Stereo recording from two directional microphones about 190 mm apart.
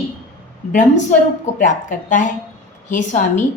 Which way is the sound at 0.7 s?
40° left (ahead or behind).